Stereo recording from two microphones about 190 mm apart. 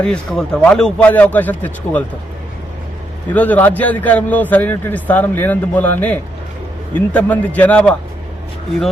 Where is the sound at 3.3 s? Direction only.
10° left (ahead or behind).